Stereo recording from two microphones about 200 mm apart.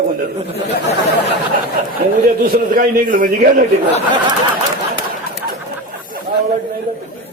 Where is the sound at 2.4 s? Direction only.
50° right (ahead or behind).